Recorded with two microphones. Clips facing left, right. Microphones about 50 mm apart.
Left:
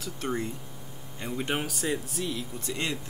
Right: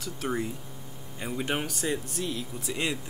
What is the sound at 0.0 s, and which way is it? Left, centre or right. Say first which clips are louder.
Speech: right 1 dB; centre.